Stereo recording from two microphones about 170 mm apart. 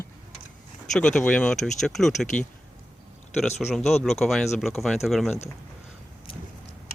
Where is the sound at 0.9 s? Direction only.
5° left (ahead or behind).